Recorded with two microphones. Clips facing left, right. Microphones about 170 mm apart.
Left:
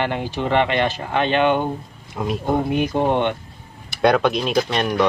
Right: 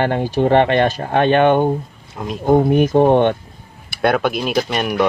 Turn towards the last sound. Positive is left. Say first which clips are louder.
# right 1 dB
turn(degrees=-10)  # may be behind; listen again after turning